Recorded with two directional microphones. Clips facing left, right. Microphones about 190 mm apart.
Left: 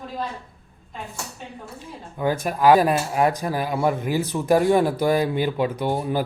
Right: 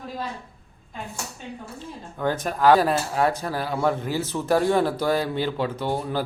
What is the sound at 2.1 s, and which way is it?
Speech, 10° left (ahead or behind).